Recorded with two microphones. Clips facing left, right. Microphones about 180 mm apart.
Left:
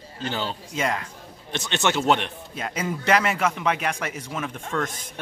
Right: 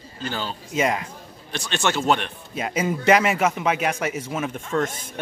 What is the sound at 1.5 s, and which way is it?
Speech, 20° left (ahead or behind).